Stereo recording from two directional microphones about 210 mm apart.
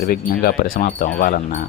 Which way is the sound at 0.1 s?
45° left (ahead or behind).